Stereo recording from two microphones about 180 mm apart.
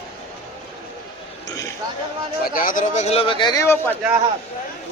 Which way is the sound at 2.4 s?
50° left (ahead or behind).